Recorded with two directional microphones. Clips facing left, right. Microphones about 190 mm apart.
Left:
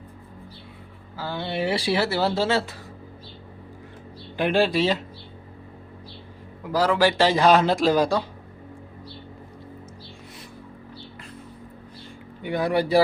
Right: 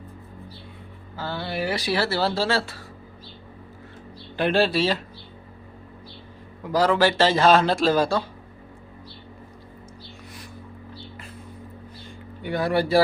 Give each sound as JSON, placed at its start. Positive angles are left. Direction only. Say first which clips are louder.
{"t": 1.1, "sound": "speech", "louder": "left 1 dB", "side_deg": 15}
{"t": 2.0, "sound": "speech", "louder": "left 1 dB", "side_deg": 15}
{"t": 4.4, "sound": "speech", "louder": "even", "side_deg": 15}
{"t": 6.7, "sound": "speech", "louder": "right 1 dB", "side_deg": 5}
{"t": 12.4, "sound": "speech", "louder": "even", "side_deg": 15}